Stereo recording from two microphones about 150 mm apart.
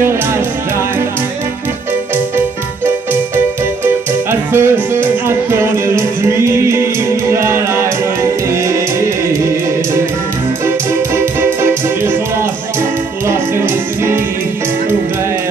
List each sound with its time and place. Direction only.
3.8 s music: 15° right (ahead or behind)
13.3 s music: 15° right (ahead or behind)